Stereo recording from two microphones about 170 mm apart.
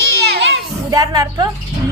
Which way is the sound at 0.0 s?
90° right.